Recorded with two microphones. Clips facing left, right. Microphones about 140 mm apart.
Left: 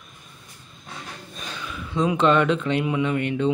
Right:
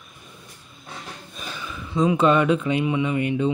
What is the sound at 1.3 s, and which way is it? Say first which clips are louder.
Speech: even; centre (ahead or behind).